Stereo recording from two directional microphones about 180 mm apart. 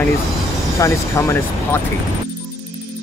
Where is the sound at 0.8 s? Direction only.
15° left (ahead or behind).